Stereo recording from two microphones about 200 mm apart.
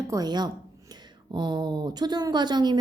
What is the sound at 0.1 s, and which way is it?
Speech, 20° right (ahead or behind).